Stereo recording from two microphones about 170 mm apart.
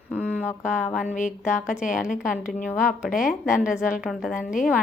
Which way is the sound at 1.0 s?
45° left (ahead or behind).